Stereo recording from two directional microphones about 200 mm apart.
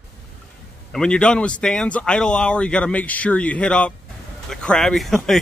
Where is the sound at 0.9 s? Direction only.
5° left (ahead or behind).